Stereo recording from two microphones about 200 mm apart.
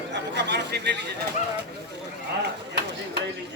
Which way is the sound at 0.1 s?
60° right (ahead or behind).